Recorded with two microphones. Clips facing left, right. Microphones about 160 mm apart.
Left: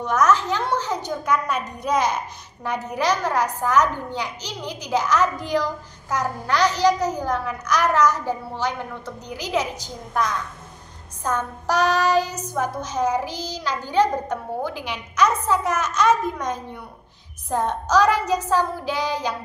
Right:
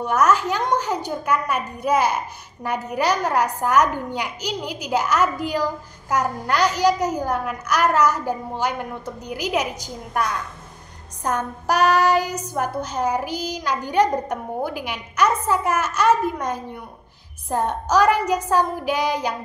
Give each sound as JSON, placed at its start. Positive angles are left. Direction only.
{"t": 0.0, "sound": "a woman's voice", "side_deg": -10}